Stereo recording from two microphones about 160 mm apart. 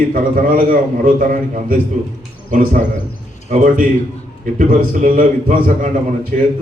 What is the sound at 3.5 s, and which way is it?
A man's voice, 60° right (ahead or behind).